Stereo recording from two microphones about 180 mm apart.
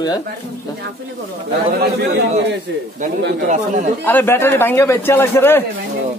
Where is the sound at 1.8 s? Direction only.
65° right (ahead or behind).